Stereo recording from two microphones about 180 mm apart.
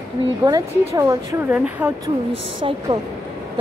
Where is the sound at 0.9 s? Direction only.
20° right (ahead or behind).